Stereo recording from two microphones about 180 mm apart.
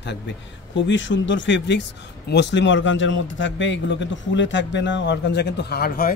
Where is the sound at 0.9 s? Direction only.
90° left.